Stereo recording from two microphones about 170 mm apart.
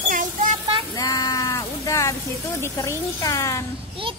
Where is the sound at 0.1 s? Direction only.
50° right (ahead or behind).